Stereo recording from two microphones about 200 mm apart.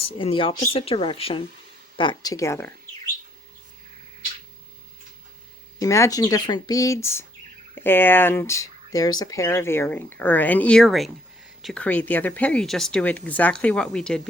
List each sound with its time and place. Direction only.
0.0 s speech: 25° left (ahead or behind)
5.8 s speech: 15° left (ahead or behind)